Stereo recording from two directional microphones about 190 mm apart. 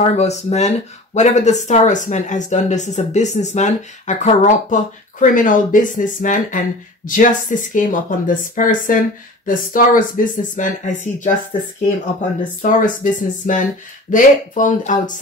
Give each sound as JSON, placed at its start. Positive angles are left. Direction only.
{"t": 0.1, "sound": "speech", "side_deg": 35}
{"t": 12.6, "sound": "speech", "side_deg": 45}